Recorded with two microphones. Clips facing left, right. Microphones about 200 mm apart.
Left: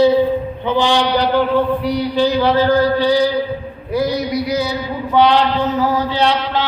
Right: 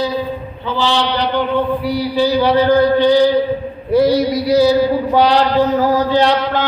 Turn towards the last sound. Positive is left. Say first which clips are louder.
# right 3 dB
turn(degrees=-50)  # may be behind; listen again after turning